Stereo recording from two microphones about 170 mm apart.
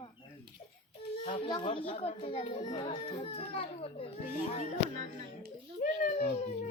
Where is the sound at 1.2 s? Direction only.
30° left (ahead or behind).